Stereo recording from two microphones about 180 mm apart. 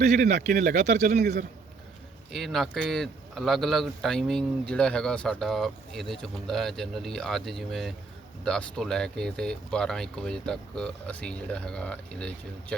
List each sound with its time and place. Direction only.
0.0 s speech: 40° right (ahead or behind)
1.2 s a man's voice: 60° right (ahead or behind)
2.3 s speech: centre (ahead or behind)